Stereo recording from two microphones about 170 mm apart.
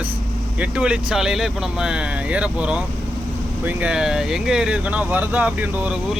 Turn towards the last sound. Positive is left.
turn(degrees=-5)  # may be behind; listen again after turning